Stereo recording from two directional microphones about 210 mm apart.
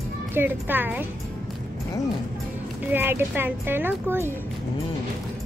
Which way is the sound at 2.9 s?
10° right (ahead or behind).